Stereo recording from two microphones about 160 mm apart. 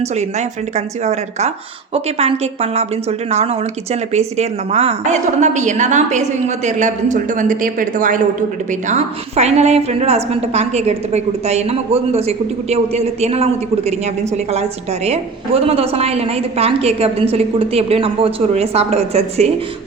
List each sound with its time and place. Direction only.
0.0 s a woman's voice: 45° right (ahead or behind)
8.9 s a woman's voice: 45° right (ahead or behind)